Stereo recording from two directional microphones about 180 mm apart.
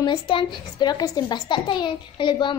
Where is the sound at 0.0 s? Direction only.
25° left (ahead or behind).